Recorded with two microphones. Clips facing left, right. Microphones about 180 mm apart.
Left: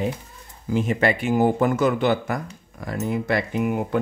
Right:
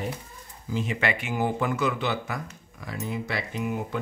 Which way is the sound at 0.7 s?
45° left (ahead or behind).